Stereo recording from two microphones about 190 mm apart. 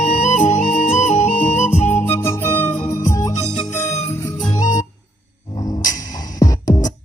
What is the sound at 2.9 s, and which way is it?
Music, 15° left (ahead or behind).